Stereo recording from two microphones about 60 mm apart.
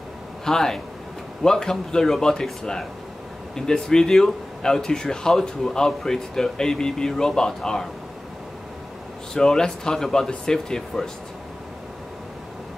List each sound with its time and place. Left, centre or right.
0.5 s speech: centre
9.3 s speech: centre